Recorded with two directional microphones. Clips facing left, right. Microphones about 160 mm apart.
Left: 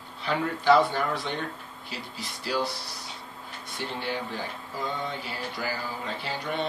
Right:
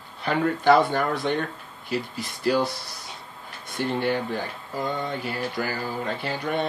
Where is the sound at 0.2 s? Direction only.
55° right (ahead or behind).